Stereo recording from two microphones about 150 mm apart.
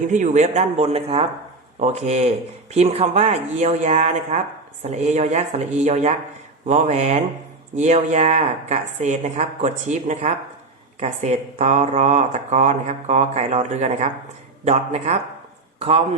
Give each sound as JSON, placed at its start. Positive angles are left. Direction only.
{"t": 0.1, "sound": "speech", "side_deg": -55}
{"t": 15.8, "sound": "a man's voice", "side_deg": -40}